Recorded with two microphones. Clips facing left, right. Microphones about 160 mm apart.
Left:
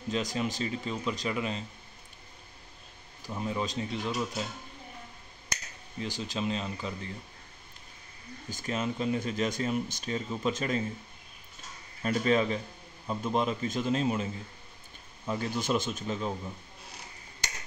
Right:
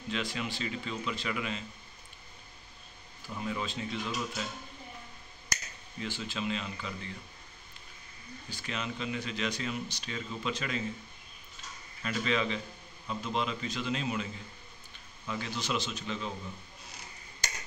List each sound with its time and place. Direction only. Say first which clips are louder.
0.1 s speech: left 4 dB; 40° left (ahead or behind)
3.3 s speech: left 3 dB; 30° left (ahead or behind)
5.9 s speech: left 3 dB; 40° left (ahead or behind)
8.5 s speech: left 6 dB; 45° left (ahead or behind)
12.0 s speech: left 5 dB; 45° left (ahead or behind)